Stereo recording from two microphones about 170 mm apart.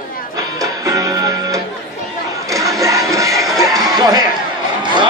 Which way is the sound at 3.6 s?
20° right (ahead or behind).